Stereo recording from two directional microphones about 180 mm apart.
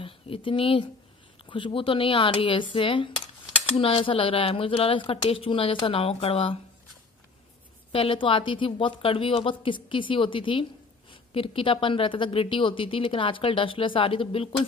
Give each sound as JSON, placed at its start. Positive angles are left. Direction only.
{"t": 0.0, "sound": "speech", "side_deg": 30}
{"t": 7.9, "sound": "speech", "side_deg": 30}